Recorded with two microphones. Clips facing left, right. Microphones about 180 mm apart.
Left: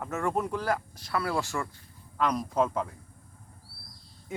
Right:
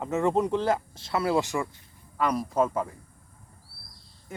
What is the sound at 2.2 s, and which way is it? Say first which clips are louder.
Speech: right 2 dB; 5° right (ahead or behind).